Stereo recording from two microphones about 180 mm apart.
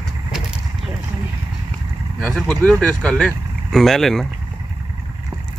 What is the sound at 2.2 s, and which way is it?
Speech, centre (ahead or behind).